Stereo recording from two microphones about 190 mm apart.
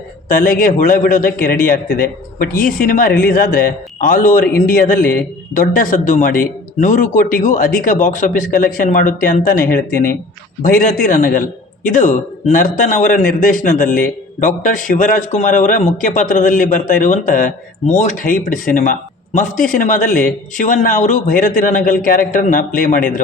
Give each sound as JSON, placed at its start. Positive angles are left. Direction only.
{"t": 0.3, "sound": "a man's voice", "side_deg": 45}